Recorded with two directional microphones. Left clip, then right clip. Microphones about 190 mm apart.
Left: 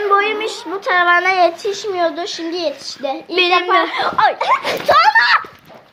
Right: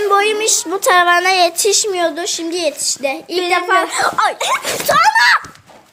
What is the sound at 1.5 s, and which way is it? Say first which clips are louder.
Speech: right 7 dB; 55° right (ahead or behind).